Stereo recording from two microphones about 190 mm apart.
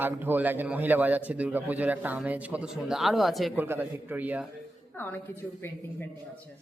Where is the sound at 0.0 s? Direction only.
10° right (ahead or behind).